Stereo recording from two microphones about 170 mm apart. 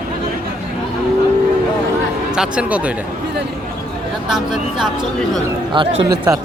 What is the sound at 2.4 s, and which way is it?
Speech, 5° right (ahead or behind).